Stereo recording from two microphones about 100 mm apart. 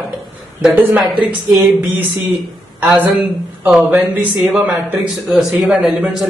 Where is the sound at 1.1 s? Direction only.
50° right (ahead or behind).